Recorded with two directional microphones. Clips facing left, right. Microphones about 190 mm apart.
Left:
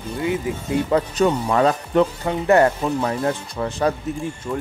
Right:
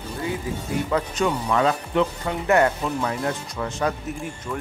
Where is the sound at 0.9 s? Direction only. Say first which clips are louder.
Left 5 dB; 35° left (ahead or behind).